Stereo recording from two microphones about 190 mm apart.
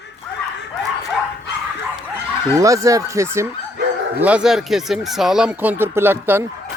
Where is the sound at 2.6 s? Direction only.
15° right (ahead or behind).